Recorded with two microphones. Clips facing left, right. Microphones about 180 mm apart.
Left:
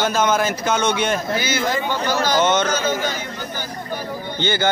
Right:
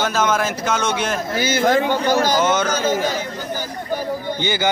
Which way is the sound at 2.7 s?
35° right (ahead or behind).